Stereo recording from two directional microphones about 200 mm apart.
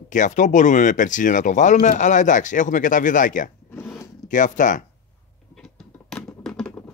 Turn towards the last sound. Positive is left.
turn(degrees=5)  # may be behind; listen again after turning